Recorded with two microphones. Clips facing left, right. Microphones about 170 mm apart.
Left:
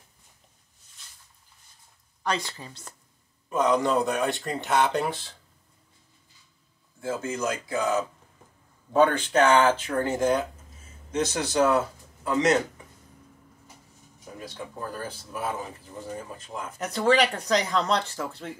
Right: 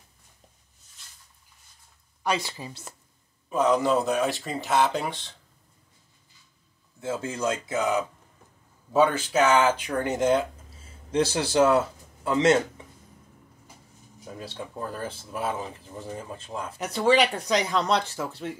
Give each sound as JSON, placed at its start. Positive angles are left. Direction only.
{"t": 2.2, "sound": "speech", "side_deg": -10}
{"t": 7.0, "sound": "speech", "side_deg": -25}
{"t": 8.9, "sound": "speech", "side_deg": -5}
{"t": 14.4, "sound": "speech", "side_deg": -25}
{"t": 16.7, "sound": "speech", "side_deg": -10}